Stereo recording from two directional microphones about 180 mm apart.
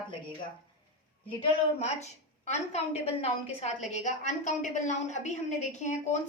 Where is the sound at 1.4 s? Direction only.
40° left (ahead or behind).